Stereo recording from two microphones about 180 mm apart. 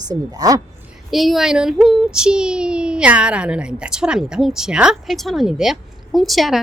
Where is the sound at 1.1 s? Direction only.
Centre (ahead or behind).